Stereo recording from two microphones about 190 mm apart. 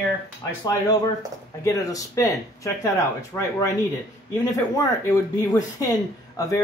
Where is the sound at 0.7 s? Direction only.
20° left (ahead or behind).